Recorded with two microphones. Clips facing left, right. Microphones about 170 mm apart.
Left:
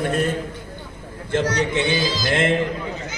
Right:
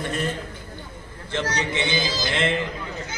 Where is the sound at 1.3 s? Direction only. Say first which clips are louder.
Left 6 dB; 50° left (ahead or behind).